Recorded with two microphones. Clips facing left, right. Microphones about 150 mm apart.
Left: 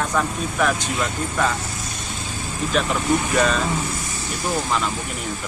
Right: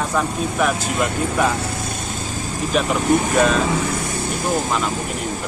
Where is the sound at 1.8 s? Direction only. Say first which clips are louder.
Right 5 dB; 50° right (ahead or behind).